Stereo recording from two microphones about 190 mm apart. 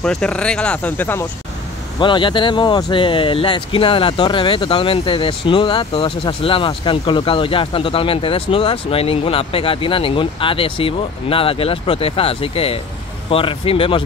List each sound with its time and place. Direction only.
0.0 s speech: 5° left (ahead or behind)
2.0 s speech: 25° left (ahead or behind)